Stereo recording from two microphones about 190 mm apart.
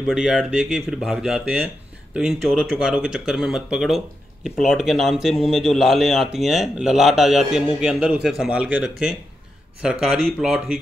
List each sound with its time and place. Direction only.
0.0 s speech: 5° right (ahead or behind)